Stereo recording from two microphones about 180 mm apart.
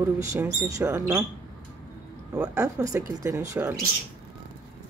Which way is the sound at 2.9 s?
15° right (ahead or behind).